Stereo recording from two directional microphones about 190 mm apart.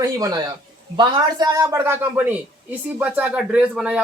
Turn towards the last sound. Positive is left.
turn(degrees=-5)  # may be behind; listen again after turning